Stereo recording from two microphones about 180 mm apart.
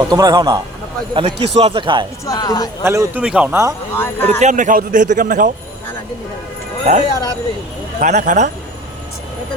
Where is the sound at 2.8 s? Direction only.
15° right (ahead or behind).